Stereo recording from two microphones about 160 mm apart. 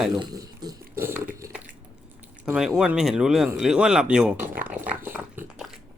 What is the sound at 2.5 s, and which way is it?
Speech, 5° right (ahead or behind).